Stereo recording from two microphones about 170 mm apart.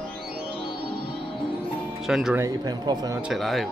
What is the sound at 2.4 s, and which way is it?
Speech, 20° right (ahead or behind).